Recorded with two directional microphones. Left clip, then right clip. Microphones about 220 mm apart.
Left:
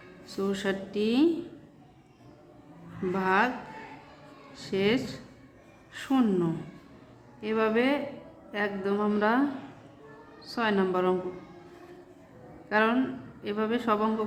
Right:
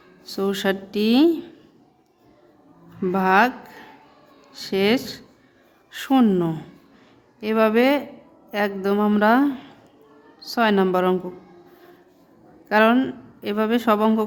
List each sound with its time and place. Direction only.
0.3 s speech: 50° right (ahead or behind)
3.1 s speech: 50° right (ahead or behind)
4.5 s speech: 50° right (ahead or behind)
12.6 s speech: 50° right (ahead or behind)